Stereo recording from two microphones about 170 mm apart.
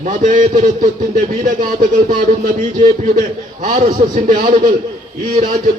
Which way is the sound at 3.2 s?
45° right (ahead or behind).